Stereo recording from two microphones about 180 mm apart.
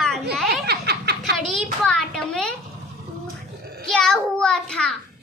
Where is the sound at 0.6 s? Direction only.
65° right (ahead or behind).